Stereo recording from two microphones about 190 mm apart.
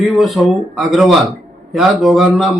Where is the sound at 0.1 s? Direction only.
Centre (ahead or behind).